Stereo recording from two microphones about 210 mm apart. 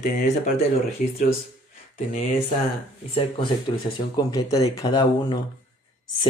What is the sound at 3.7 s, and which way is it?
Speech, 25° left (ahead or behind).